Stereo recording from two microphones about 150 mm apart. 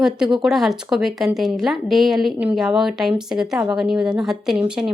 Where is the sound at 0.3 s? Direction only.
Centre (ahead or behind).